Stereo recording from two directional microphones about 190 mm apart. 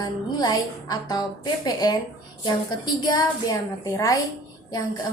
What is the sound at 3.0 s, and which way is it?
A woman's voice, 20° left (ahead or behind).